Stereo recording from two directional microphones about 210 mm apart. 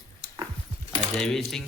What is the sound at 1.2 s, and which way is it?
Speech, centre (ahead or behind).